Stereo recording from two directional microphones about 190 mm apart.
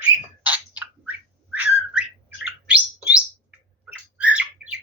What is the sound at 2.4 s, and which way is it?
Bird, 5° right (ahead or behind).